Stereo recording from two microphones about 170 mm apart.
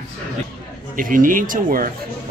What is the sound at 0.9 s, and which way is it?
Speech, 55° right (ahead or behind).